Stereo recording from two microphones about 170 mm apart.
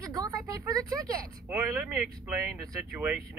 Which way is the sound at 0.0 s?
20° right (ahead or behind).